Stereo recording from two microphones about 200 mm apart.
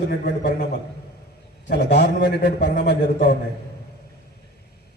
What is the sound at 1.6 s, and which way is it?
A man's voice, 60° left (ahead or behind).